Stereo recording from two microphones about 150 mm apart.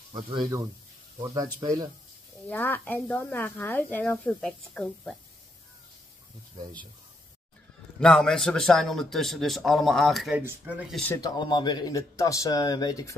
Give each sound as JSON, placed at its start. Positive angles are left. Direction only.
{"t": 0.1, "sound": "speech", "side_deg": -35}
{"t": 1.2, "sound": "speech", "side_deg": -25}
{"t": 2.4, "sound": "speech", "side_deg": 10}
{"t": 8.0, "sound": "a man's voice", "side_deg": 5}
{"t": 10.4, "sound": "speech", "side_deg": -15}
{"t": 10.9, "sound": "speech", "side_deg": 10}
{"t": 11.1, "sound": "speech", "side_deg": 30}